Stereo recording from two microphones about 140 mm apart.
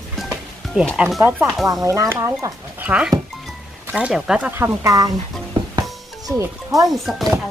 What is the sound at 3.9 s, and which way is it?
Speech, 5° right (ahead or behind).